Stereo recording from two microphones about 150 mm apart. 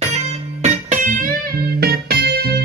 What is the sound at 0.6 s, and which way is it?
Music, 55° right (ahead or behind).